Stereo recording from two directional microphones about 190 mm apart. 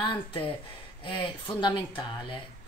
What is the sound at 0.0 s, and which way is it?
A woman's voice, 25° left (ahead or behind).